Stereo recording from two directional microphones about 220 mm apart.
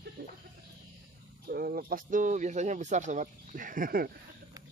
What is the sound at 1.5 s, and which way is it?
Speech, 45° right (ahead or behind).